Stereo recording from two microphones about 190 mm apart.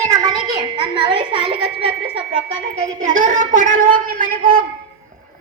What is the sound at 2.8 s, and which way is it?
A woman's voice, 40° right (ahead or behind).